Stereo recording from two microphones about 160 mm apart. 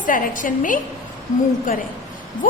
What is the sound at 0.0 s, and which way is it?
Speech, 55° left (ahead or behind).